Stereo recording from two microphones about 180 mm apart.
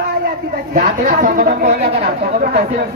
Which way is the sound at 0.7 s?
50° right (ahead or behind).